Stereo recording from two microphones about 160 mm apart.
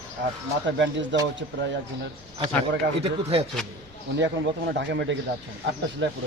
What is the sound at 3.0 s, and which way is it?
Speech, 35° right (ahead or behind).